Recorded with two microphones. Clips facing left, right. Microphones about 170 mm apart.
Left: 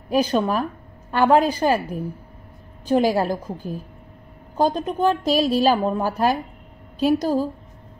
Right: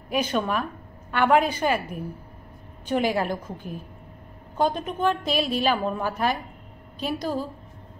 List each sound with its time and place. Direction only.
0.1 s a woman's voice: 35° left (ahead or behind)